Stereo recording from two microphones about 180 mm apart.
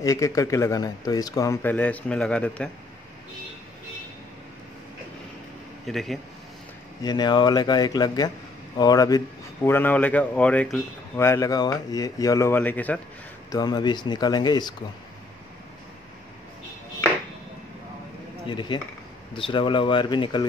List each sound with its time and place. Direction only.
0.0 s speech: 20° left (ahead or behind)
5.9 s speech: centre (ahead or behind)
7.0 s speech: 20° left (ahead or behind)
13.5 s speech: 20° left (ahead or behind)
18.5 s speech: 25° left (ahead or behind)